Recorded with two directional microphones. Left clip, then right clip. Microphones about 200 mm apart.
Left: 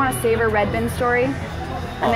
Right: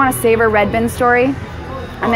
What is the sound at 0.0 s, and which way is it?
A woman's voice, 40° right (ahead or behind).